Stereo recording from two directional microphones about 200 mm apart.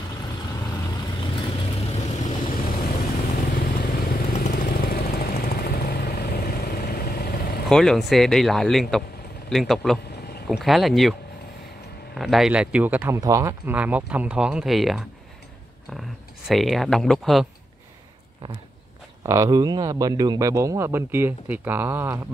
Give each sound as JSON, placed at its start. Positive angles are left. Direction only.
{"t": 1.2, "sound": "vehicle", "side_deg": 30}
{"t": 2.5, "sound": "vehicle", "side_deg": 45}
{"t": 7.6, "sound": "speech", "side_deg": 0}
{"t": 12.2, "sound": "a man's voice", "side_deg": 0}
{"t": 16.4, "sound": "speech", "side_deg": 0}
{"t": 19.2, "sound": "a man's voice", "side_deg": -15}